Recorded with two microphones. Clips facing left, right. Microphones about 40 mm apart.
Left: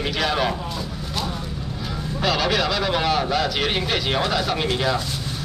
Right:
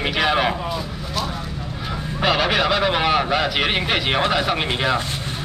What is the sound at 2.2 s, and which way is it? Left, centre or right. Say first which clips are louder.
A man's voice: right 3 dB; right.